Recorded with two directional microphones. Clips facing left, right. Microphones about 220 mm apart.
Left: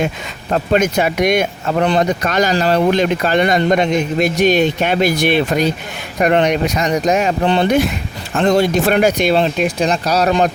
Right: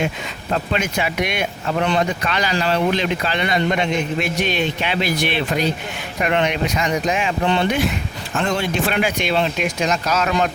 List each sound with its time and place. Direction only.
0.5 s speech: 45° left (ahead or behind)